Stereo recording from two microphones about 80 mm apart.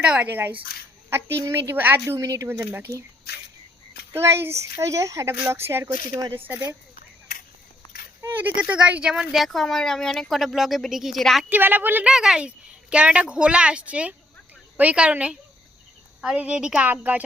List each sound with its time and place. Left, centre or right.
0.0 s speech: centre
1.4 s speech: right
2.1 s speech: right
2.5 s speech: right
4.1 s speech: right
8.4 s speech: right; by 11.4 s centre
11.4 s speech: right
12.0 s a woman's voice: centre